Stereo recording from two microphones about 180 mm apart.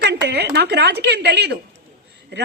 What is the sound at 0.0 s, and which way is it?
A woman's voice, 65° right (ahead or behind).